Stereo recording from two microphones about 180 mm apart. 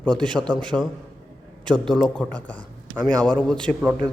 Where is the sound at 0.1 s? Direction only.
25° right (ahead or behind).